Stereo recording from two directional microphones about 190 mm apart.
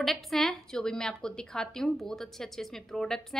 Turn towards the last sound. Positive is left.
turn(degrees=5)  # may be behind; listen again after turning